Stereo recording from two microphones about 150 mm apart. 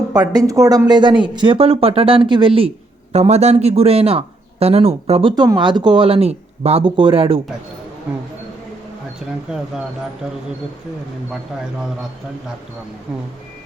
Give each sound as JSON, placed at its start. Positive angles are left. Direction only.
{"t": 0.1, "sound": "speech", "side_deg": -25}
{"t": 2.6, "sound": "a man's voice", "side_deg": -45}
{"t": 5.3, "sound": "speech", "side_deg": -30}